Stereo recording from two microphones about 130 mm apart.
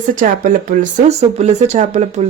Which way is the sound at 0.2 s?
80° right.